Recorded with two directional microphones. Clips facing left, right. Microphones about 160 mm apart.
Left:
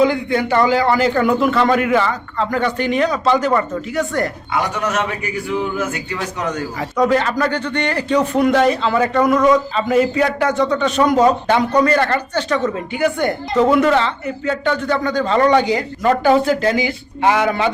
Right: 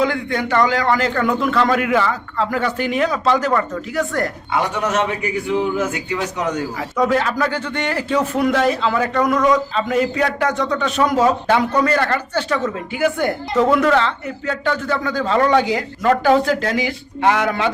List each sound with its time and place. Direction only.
0.0 s speech: 5° left (ahead or behind)
4.5 s a man's voice: 25° right (ahead or behind)
6.9 s speech: centre (ahead or behind)